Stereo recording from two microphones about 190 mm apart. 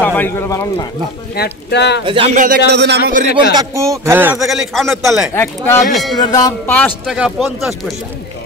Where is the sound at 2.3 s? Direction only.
45° right (ahead or behind).